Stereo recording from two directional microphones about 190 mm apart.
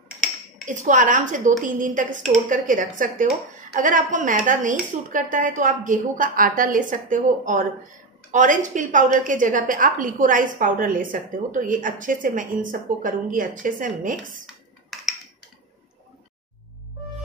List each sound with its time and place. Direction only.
0.7 s a woman's voice: 40° right (ahead or behind)
14.4 s computer keyboard: centre (ahead or behind)